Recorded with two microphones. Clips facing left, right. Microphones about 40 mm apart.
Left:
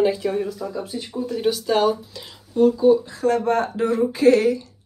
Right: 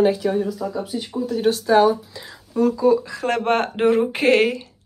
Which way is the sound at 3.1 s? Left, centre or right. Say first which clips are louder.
Left 1 dB; right.